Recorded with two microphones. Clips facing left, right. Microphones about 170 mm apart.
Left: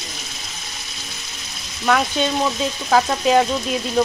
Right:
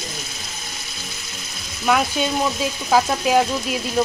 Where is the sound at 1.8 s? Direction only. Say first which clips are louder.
Left 1 dB; 5° right (ahead or behind).